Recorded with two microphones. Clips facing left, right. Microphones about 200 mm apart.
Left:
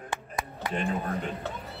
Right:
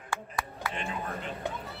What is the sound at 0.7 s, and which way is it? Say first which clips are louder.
Speech: left 8 dB; 45° left (ahead or behind).